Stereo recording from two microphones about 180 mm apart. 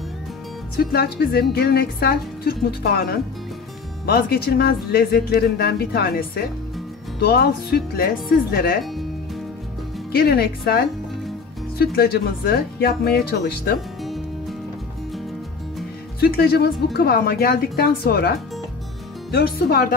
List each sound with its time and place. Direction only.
0.7 s speech: 60° left (ahead or behind)
10.1 s speech: 60° left (ahead or behind)
16.2 s speech: 55° left (ahead or behind)
19.3 s speech: 55° left (ahead or behind)